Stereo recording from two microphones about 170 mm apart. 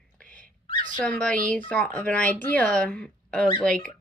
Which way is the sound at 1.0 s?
5° left (ahead or behind).